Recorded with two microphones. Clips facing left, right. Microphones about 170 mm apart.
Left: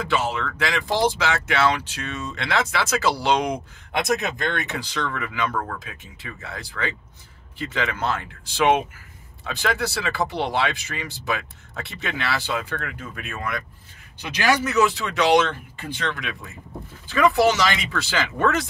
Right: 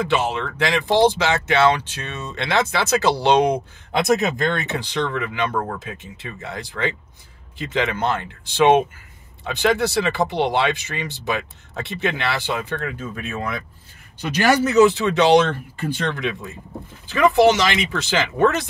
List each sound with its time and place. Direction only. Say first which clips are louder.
0.1 s speech: right 3 dB; 20° right (ahead or behind)